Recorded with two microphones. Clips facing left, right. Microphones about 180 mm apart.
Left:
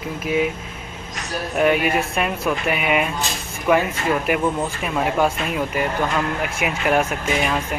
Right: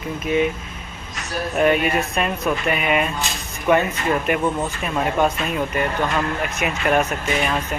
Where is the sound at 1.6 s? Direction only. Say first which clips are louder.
Even; 10° left (ahead or behind).